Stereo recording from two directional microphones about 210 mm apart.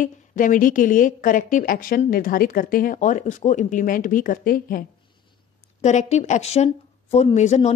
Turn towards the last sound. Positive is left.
turn(degrees=30)  # may be behind; listen again after turning